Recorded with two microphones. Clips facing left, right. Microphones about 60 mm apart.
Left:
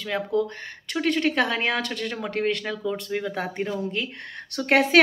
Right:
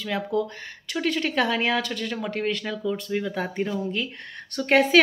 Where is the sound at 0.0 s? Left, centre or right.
Left.